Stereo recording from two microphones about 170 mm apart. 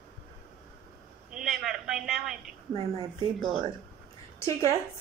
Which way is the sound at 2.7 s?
35° right (ahead or behind).